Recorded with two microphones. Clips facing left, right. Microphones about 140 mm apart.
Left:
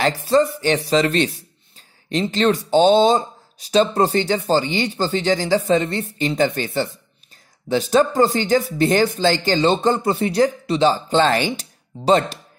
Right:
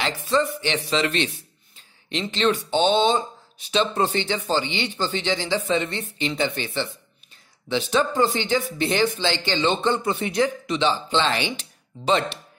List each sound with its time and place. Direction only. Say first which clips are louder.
0.0 s speech: left 6 dB; 35° left (ahead or behind)